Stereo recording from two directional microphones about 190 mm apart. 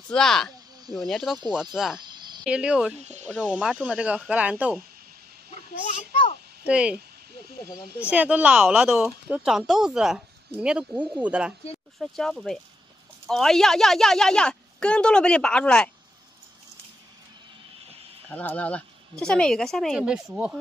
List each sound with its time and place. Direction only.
0.1 s speech: 5° left (ahead or behind)
2.0 s cricket: 20° right (ahead or behind)
2.4 s speech: 5° right (ahead or behind)
5.9 s speech: 35° left (ahead or behind)
6.6 s speech: 5° right (ahead or behind)
8.0 s speech: 5° right (ahead or behind)
18.3 s speech: 5° left (ahead or behind)